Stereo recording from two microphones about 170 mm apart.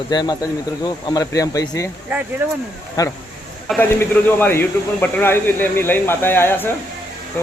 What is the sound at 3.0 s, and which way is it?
A man's voice, 20° left (ahead or behind).